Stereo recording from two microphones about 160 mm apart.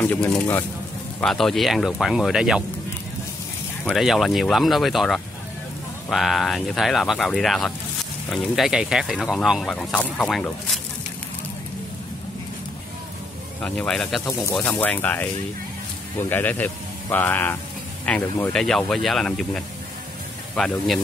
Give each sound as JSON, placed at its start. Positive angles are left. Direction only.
{"t": 0.0, "sound": "speech", "side_deg": 10}
{"t": 3.9, "sound": "speech", "side_deg": 0}
{"t": 13.6, "sound": "speech", "side_deg": 10}
{"t": 14.2, "sound": "speech", "side_deg": 20}
{"t": 16.3, "sound": "speech", "side_deg": 10}